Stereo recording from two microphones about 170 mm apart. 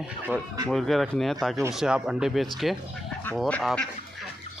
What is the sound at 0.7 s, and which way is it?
Speech, centre (ahead or behind).